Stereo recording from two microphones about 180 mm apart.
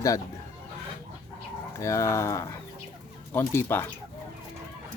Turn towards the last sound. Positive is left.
turn(degrees=15)  # may be behind; listen again after turning